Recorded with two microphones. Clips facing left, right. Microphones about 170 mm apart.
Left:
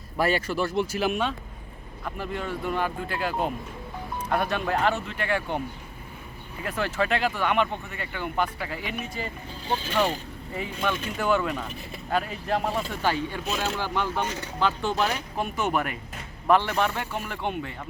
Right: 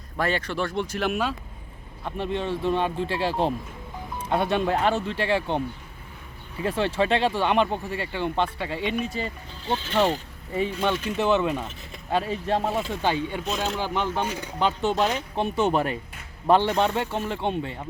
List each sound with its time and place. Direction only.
0.2 s speech: 10° left (ahead or behind)
2.0 s speech: 25° right (ahead or behind)
14.7 s speech: 20° right (ahead or behind)